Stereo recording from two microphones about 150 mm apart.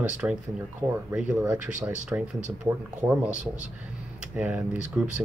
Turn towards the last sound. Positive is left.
turn(degrees=-10)  # may be behind; listen again after turning